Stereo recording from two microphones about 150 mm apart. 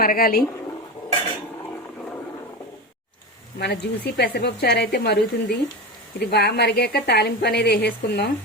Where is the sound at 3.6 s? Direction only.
90° left.